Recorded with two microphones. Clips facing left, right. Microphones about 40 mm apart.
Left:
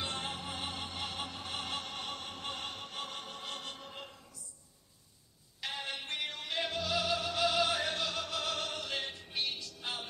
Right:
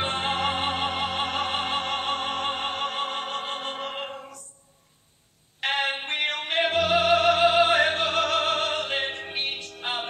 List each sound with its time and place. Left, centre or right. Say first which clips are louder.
0.0 s music: right 13 dB; right
3.8 s opera: right 15 dB; right
5.6 s music: right 13 dB; right